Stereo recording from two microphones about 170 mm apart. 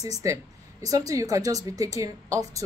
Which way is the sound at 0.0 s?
20° right (ahead or behind).